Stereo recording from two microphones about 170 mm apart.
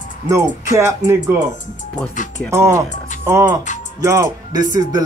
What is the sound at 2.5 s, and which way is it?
Speech, 15° right (ahead or behind).